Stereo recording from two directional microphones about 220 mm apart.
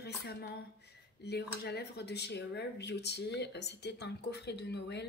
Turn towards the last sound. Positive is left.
turn(degrees=50)  # may be behind; listen again after turning